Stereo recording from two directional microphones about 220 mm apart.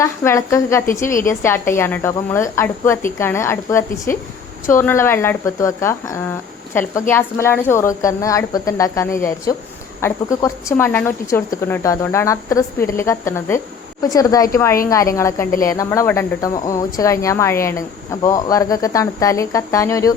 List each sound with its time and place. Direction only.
0.0 s speech: 15° left (ahead or behind)